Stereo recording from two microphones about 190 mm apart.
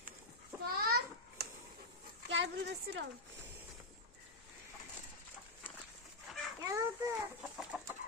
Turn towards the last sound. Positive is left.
turn(degrees=0)  # may be behind; listen again after turning